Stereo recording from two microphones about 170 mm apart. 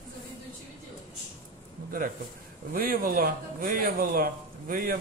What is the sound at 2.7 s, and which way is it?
Speech, 60° right (ahead or behind).